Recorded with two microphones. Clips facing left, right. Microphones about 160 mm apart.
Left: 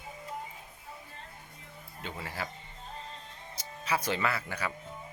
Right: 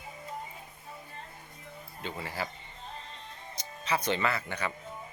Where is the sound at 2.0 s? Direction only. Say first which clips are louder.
Right 2 dB; centre (ahead or behind).